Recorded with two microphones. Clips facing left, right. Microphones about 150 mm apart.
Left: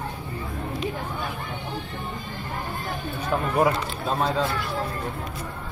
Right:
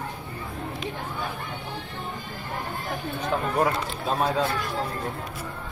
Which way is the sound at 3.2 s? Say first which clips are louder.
Left 2 dB; 5° left (ahead or behind).